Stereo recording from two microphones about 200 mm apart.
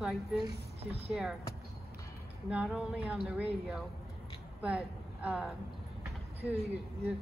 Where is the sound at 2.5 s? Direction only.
5° right (ahead or behind).